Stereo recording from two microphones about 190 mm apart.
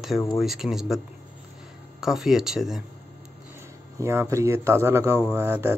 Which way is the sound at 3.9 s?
15° right (ahead or behind).